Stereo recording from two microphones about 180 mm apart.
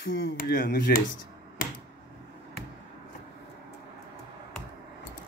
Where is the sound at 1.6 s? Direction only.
50° left (ahead or behind).